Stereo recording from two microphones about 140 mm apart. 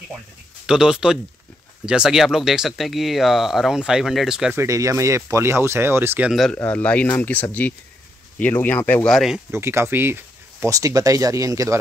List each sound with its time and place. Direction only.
0.7 s speech: 5° right (ahead or behind)
4.6 s speech: 20° right (ahead or behind)
6.3 s speech: 5° left (ahead or behind)
9.5 s speech: 15° right (ahead or behind)